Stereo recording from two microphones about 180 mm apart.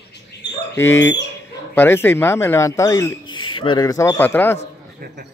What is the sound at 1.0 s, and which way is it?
Speech, 80° left.